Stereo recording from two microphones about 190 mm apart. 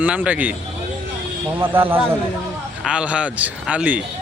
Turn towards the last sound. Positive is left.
turn(degrees=-10)  # may be behind; listen again after turning